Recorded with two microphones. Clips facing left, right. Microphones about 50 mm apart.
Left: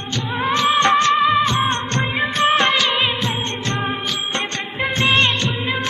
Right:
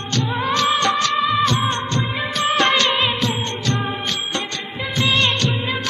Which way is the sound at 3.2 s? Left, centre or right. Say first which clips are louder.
Even; left.